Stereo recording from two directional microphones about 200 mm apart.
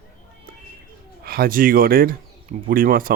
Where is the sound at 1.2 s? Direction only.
50° right (ahead or behind).